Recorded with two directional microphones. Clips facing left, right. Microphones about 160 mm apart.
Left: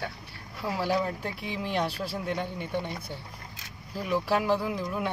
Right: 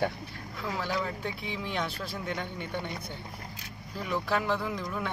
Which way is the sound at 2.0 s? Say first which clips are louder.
Left 4 dB; 10° left (ahead or behind).